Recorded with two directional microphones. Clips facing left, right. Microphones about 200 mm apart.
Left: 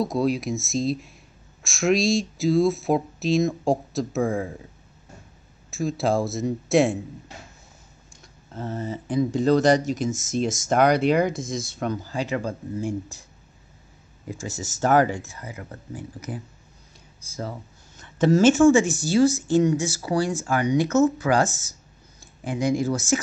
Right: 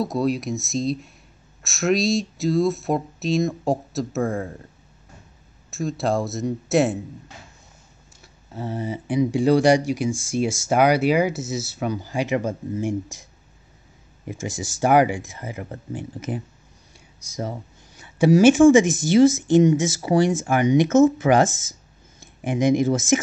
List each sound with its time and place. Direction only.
0.0 s speech: centre (ahead or behind)
5.7 s speech: centre (ahead or behind)
8.1 s speech: 5° right (ahead or behind)
15.3 s speech: 25° right (ahead or behind)
17.9 s speech: 10° right (ahead or behind)